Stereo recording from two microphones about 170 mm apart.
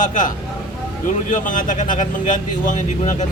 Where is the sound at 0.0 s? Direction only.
50° left (ahead or behind).